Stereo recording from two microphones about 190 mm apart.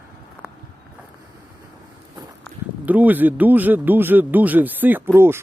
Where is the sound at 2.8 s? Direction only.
10° right (ahead or behind).